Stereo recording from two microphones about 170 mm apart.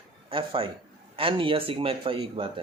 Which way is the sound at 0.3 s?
30° right (ahead or behind).